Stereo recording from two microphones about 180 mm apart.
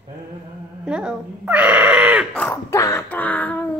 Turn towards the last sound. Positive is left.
turn(degrees=10)  # may be behind; listen again after turning